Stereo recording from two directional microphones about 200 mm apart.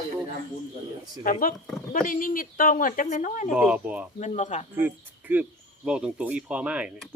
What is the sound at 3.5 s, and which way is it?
Speech, 5° right (ahead or behind).